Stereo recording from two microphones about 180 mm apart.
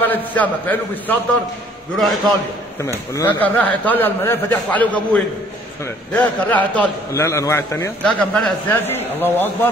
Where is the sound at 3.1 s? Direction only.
10° left (ahead or behind).